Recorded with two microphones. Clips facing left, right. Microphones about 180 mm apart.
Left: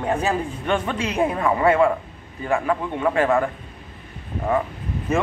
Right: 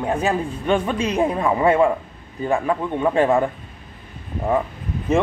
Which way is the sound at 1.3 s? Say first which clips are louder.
Even; 15° right (ahead or behind).